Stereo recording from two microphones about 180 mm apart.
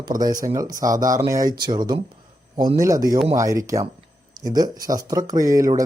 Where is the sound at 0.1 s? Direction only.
50° right (ahead or behind).